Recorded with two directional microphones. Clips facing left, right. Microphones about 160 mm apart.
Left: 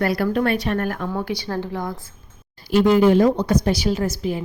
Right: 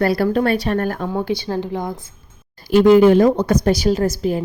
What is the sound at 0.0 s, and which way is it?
A woman's voice, 35° right (ahead or behind).